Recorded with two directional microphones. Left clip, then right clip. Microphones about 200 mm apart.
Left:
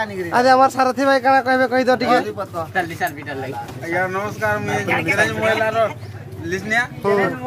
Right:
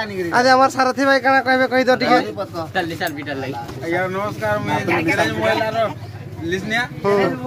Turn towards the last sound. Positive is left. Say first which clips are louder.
# even
turn(degrees=5)  # may be behind; listen again after turning